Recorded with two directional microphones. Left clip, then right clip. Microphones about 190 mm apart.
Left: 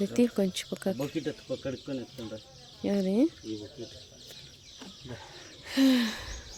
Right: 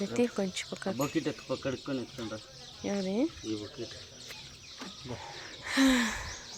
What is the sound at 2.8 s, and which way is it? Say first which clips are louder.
Speech: left 4 dB; 45° left (ahead or behind).